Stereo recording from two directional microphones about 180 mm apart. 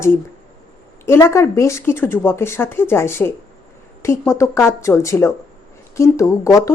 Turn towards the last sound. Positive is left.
turn(degrees=15)  # may be behind; listen again after turning